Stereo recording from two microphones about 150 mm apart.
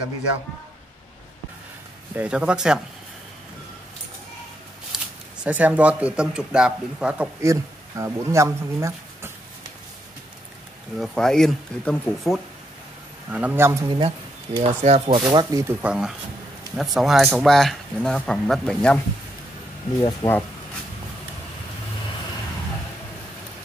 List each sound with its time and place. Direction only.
2.1 s speech: 5° right (ahead or behind)
4.9 s a sound: 5° right (ahead or behind)
5.4 s speech: 10° right (ahead or behind)
7.4 s speech: 20° right (ahead or behind)
11.0 s speech: 5° left (ahead or behind)
13.3 s speech: 10° right (ahead or behind)
13.8 s speech: 35° right (ahead or behind)
15.1 s speech: 30° right (ahead or behind)
15.8 s speech: 5° right (ahead or behind)
20.0 s speech: 25° left (ahead or behind)